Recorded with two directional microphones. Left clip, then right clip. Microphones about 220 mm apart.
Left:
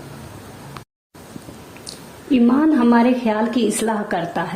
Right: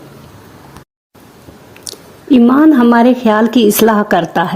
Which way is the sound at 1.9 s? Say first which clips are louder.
Right 8 dB; 50° right (ahead or behind).